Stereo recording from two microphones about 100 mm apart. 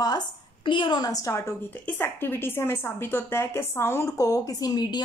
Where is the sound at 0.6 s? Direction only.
55° left (ahead or behind).